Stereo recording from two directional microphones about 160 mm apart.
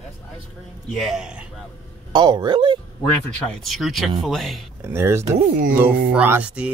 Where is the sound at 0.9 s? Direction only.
Centre (ahead or behind).